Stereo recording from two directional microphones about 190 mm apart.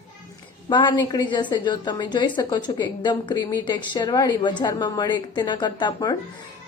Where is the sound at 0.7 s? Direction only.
20° left (ahead or behind).